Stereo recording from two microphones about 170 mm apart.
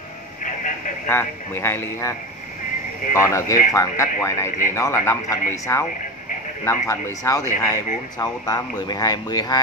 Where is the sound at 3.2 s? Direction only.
15° left (ahead or behind).